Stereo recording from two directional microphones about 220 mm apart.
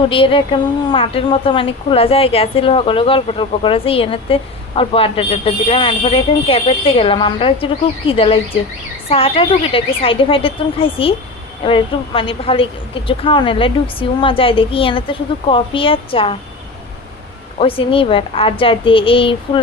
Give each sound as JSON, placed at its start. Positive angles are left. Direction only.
{"t": 0.1, "sound": "a woman's voice", "side_deg": 25}
{"t": 17.6, "sound": "a woman's voice", "side_deg": 25}